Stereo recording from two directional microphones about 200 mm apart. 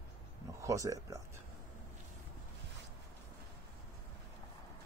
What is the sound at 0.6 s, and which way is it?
Speech, 15° right (ahead or behind).